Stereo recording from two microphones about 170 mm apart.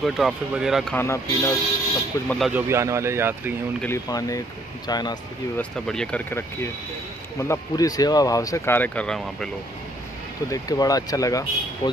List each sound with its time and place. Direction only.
0.0 s speech: centre (ahead or behind)
0.9 s speech: 15° left (ahead or behind)
2.2 s speech: centre (ahead or behind)
2.5 s speech: 15° right (ahead or behind)
3.8 s speech: 15° left (ahead or behind)
5.6 s speech: 5° left (ahead or behind)
10.5 s speech: 20° left (ahead or behind)